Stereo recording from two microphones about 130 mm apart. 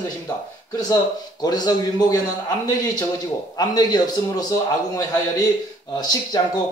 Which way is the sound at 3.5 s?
30° left (ahead or behind).